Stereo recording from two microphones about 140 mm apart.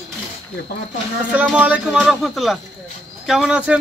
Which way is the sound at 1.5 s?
10° right (ahead or behind).